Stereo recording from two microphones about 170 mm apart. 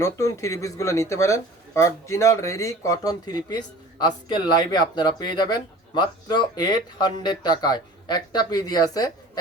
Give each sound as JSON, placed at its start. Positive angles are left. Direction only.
{"t": 0.0, "sound": "speech", "side_deg": 15}